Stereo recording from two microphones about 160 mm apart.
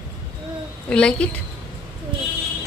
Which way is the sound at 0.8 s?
5° left (ahead or behind).